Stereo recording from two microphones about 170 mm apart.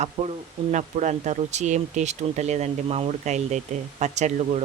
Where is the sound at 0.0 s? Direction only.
45° right (ahead or behind).